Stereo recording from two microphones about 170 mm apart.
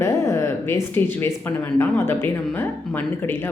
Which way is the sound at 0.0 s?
15° left (ahead or behind).